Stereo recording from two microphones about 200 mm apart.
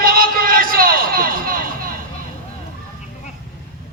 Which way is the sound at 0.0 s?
45° right (ahead or behind).